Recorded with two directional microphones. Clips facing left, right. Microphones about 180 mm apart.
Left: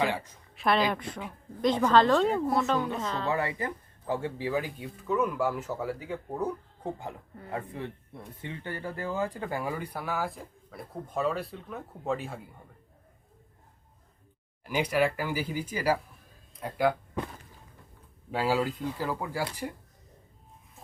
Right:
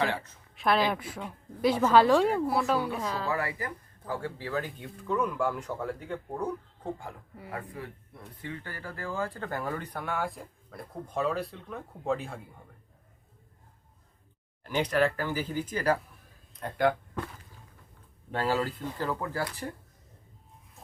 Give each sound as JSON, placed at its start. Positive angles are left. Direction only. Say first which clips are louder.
{"t": 0.0, "sound": "speech", "louder": "left 1 dB", "side_deg": 15}
{"t": 0.5, "sound": "a woman's voice", "louder": "even", "side_deg": 0}
{"t": 3.2, "sound": "speech", "louder": "left 2 dB", "side_deg": 25}
{"t": 4.6, "sound": "speech", "louder": "left 1 dB", "side_deg": 5}
{"t": 7.5, "sound": "speech", "louder": "left 4 dB", "side_deg": 25}
{"t": 14.6, "sound": "speech", "louder": "even", "side_deg": 10}
{"t": 18.3, "sound": "speech", "louder": "left 1 dB", "side_deg": 10}